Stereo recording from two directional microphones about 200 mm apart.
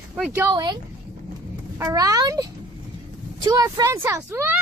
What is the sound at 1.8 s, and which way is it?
Speech, 15° right (ahead or behind).